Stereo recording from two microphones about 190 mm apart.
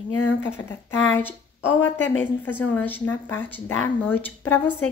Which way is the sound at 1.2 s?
10° left (ahead or behind).